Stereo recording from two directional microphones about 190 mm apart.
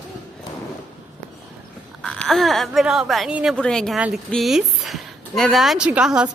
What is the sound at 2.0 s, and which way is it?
Speech, 5° left (ahead or behind).